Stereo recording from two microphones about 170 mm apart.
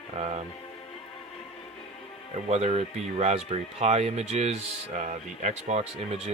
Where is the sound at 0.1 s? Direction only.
40° right (ahead or behind).